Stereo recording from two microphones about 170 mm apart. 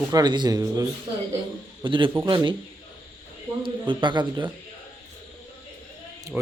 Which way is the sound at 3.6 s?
30° right (ahead or behind).